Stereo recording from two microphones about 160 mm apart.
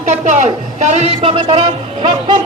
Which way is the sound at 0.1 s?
50° right (ahead or behind).